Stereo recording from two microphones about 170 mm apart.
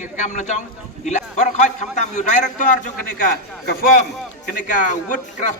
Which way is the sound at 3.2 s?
60° left (ahead or behind).